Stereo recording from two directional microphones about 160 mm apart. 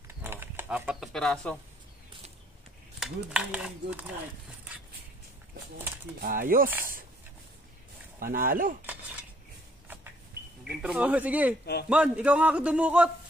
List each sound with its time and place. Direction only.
0.2 s a sound: 15° right (ahead or behind)
1.1 s speech: 5° left (ahead or behind)
3.0 s speech: 5° right (ahead or behind)
6.2 s speech: 60° right (ahead or behind)
8.2 s speech: 65° right (ahead or behind)
10.8 s a man's voice: 5° right (ahead or behind)